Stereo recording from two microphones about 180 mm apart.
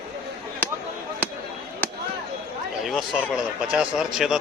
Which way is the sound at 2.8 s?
Centre (ahead or behind).